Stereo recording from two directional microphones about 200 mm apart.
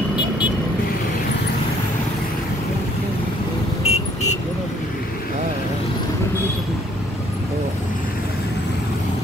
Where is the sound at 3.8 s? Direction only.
30° left (ahead or behind).